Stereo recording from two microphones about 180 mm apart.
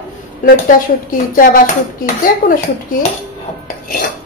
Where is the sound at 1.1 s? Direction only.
50° left (ahead or behind).